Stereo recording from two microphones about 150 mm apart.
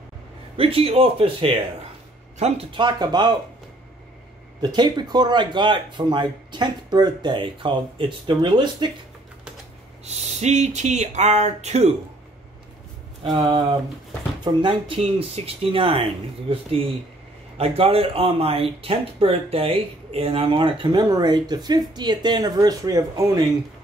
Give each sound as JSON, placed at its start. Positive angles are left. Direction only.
{"t": 0.6, "sound": "speech", "side_deg": -40}
{"t": 2.7, "sound": "speech", "side_deg": -30}
{"t": 4.6, "sound": "speech", "side_deg": -30}
{"t": 10.0, "sound": "a sound", "side_deg": -45}
{"t": 13.2, "sound": "speech", "side_deg": -30}